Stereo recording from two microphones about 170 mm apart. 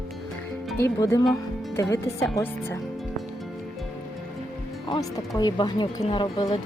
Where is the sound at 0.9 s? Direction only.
20° left (ahead or behind).